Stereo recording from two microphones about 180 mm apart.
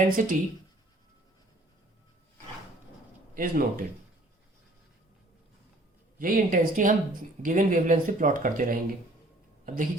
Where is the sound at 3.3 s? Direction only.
50° right (ahead or behind).